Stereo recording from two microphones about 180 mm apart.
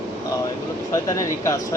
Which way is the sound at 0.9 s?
20° left (ahead or behind).